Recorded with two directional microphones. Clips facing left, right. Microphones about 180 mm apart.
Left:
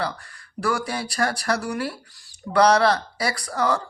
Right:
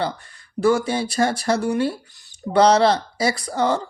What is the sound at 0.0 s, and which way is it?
Speech, 25° right (ahead or behind).